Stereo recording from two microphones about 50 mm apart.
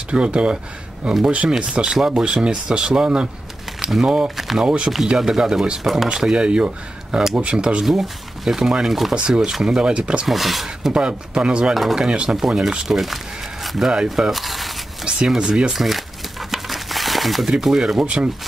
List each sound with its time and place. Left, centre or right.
0.1 s speech: right; by 4.6 s centre
4.6 s speech: right; by 6.0 s centre
6.0 s speech: centre
7.8 s speech: centre; by 10.2 s right
10.2 s speech: centre
10.9 s speech: centre
11.7 s speech: centre
15.2 s speech: centre
15.7 s crumpling: centre
17.6 s speech: centre
18.0 s speech: right